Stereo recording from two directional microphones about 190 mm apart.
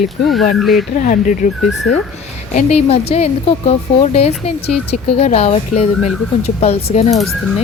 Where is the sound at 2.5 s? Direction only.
35° left (ahead or behind).